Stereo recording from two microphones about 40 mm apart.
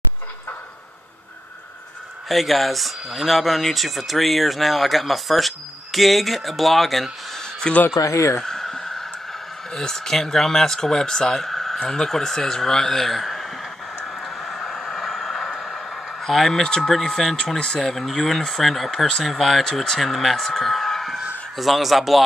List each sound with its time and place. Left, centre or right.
2.2 s speech: centre
7.7 s speech: left
8.4 s a sound: centre
9.7 s speech: centre
14.0 s a sound: centre
16.6 s speech: centre